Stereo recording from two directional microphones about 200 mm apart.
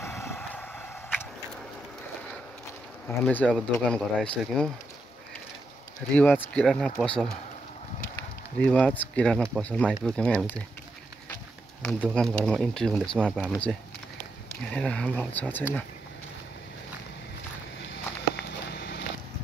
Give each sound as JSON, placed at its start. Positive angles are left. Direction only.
{"t": 0.3, "sound": "a sound", "side_deg": 5}
{"t": 3.3, "sound": "speech", "side_deg": 5}
{"t": 6.1, "sound": "speech", "side_deg": 10}
{"t": 8.5, "sound": "speech", "side_deg": 5}
{"t": 11.8, "sound": "speech", "side_deg": 5}
{"t": 18.3, "sound": "a sound", "side_deg": 55}